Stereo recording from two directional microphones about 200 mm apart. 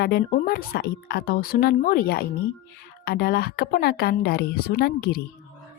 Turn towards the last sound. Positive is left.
turn(degrees=50)  # may be behind; listen again after turning